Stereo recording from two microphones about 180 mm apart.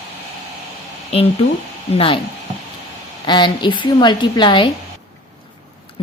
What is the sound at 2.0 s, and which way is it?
Speech, 30° left (ahead or behind).